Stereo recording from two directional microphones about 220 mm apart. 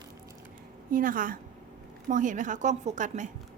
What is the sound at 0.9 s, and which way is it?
A woman's voice, 40° right (ahead or behind).